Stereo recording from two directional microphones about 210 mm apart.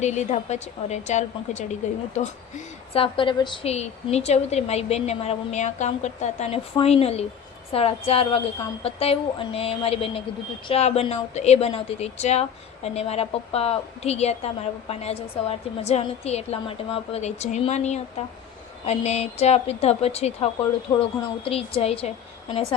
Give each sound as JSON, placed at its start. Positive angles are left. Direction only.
{"t": 0.0, "sound": "a woman's voice", "side_deg": 35}
{"t": 2.9, "sound": "a woman's voice", "side_deg": 25}